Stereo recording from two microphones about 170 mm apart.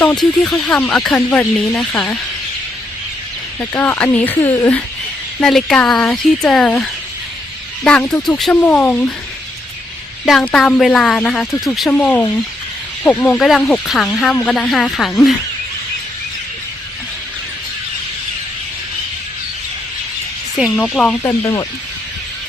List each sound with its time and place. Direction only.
0.0 s speech: 5° left (ahead or behind)
3.6 s speech: 10° left (ahead or behind)
10.2 s speech: centre (ahead or behind)
20.7 s speech: 5° left (ahead or behind)
21.4 s speech: 20° left (ahead or behind)